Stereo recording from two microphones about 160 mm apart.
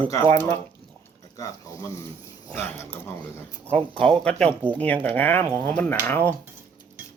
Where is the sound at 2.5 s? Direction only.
15° left (ahead or behind).